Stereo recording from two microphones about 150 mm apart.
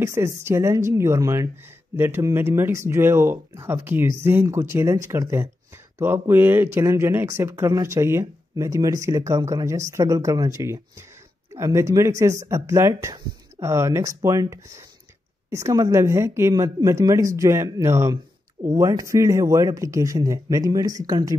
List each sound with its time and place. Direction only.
0.0 s speech: 20° right (ahead or behind)